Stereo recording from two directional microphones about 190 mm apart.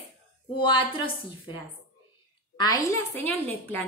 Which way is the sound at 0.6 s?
25° left (ahead or behind).